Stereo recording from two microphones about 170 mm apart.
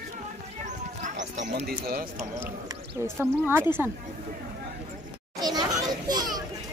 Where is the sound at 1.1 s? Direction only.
90° right.